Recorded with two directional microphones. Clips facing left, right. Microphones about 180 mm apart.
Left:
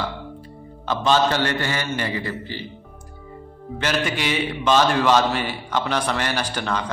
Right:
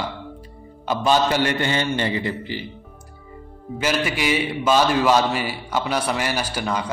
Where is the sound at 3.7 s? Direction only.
10° right (ahead or behind).